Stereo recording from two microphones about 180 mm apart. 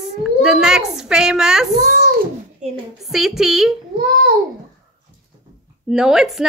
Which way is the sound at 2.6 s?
40° right (ahead or behind).